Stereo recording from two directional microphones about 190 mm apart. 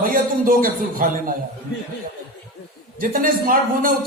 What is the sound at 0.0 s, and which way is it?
A man's voice, 50° right (ahead or behind).